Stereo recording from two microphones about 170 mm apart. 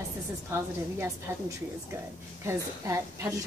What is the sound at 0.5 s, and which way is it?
A woman's voice, 15° right (ahead or behind).